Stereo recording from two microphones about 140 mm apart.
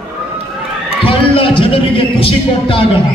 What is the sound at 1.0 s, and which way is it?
Speech, 40° left (ahead or behind).